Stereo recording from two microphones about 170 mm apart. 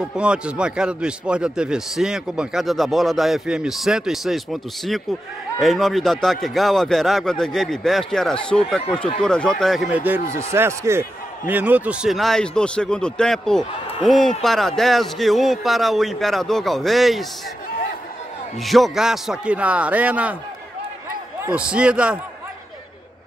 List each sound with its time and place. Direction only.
0.1 s a man's voice: 5° right (ahead or behind)
18.6 s a man's voice: centre (ahead or behind)
21.5 s a man's voice: 5° right (ahead or behind)